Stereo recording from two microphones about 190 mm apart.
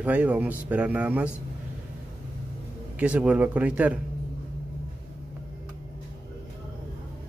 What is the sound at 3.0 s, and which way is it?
Speech, 5° right (ahead or behind).